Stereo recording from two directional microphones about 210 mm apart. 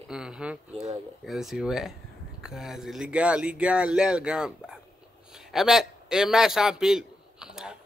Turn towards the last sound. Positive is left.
turn(degrees=-5)  # may be behind; listen again after turning